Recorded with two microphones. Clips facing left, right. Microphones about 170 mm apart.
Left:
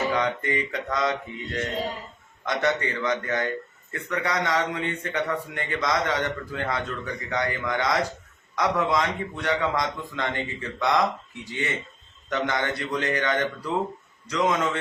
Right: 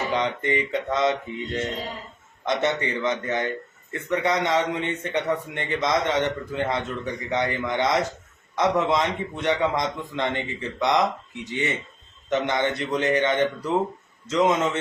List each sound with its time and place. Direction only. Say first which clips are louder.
0.1 s a man's voice: right 1 dB; 20° right (ahead or behind)